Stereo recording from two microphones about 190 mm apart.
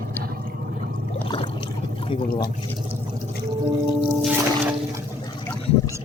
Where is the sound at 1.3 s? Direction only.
30° left (ahead or behind).